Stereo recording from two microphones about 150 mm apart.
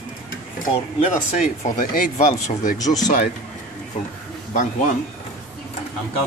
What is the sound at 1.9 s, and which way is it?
Speech, 60° left (ahead or behind).